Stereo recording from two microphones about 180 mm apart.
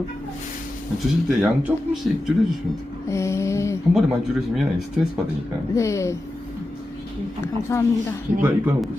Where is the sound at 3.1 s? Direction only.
15° left (ahead or behind).